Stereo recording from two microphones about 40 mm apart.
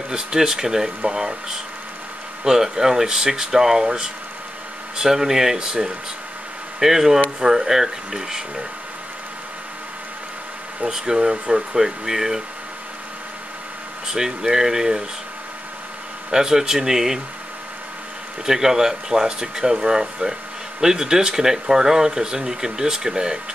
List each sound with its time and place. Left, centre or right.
0.1 s speech: centre
2.4 s speech: centre
11.1 s speech: centre
14.0 s speech: centre
16.3 s speech: centre
18.4 s speech: centre